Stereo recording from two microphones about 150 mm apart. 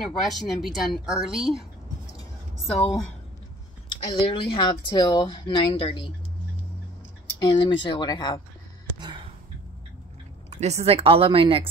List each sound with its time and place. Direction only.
0.0 s speech: centre (ahead or behind)
3.9 s speech: 35° left (ahead or behind)
7.3 s speech: 30° left (ahead or behind)
10.5 s speech: 45° right (ahead or behind)